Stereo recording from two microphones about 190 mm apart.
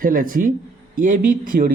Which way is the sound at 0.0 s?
45° right (ahead or behind).